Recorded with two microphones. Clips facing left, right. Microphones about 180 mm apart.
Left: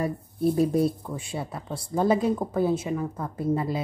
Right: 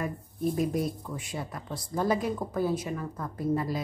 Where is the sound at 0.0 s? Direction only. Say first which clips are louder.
Left 5 dB; 35° left (ahead or behind).